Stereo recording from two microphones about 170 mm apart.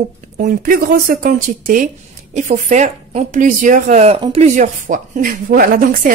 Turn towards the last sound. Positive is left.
turn(degrees=-55)  # may be behind; listen again after turning